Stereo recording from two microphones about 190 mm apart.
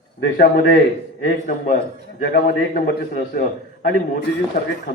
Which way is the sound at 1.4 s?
45° left (ahead or behind).